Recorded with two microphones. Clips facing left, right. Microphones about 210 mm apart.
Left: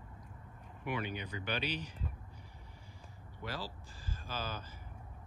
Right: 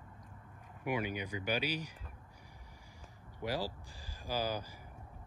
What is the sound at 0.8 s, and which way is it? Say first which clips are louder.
Speech: right 3 dB; 10° right (ahead or behind).